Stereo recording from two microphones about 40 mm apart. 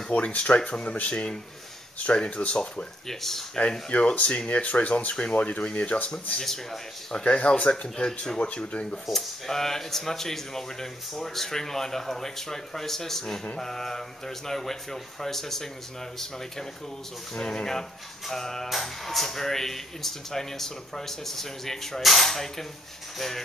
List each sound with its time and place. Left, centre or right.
0.3 s speech: left
3.1 s speech: centre
3.9 s speech: left
6.4 s speech: centre
7.2 s speech: left
9.1 s speech: centre
17.3 s speech: centre